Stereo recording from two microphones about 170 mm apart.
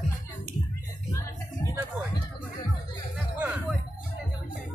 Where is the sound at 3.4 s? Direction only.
10° right (ahead or behind).